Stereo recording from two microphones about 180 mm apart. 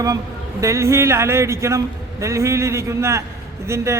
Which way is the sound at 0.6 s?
15° right (ahead or behind).